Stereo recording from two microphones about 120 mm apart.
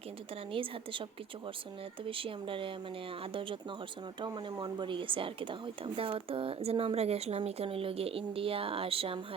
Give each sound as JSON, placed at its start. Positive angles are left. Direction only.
{"t": 0.5, "sound": "a woman's voice", "side_deg": -45}
{"t": 2.0, "sound": "a woman's voice", "side_deg": -45}
{"t": 4.2, "sound": "a woman's voice", "side_deg": -40}